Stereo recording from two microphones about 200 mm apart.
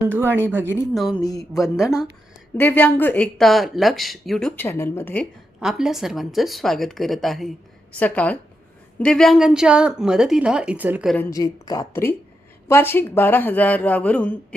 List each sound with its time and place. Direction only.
0.1 s speech: 10° right (ahead or behind)
0.9 s speech: centre (ahead or behind)
2.6 s speech: 10° left (ahead or behind)
5.5 s speech: 5° right (ahead or behind)
11.3 s speech: 15° left (ahead or behind)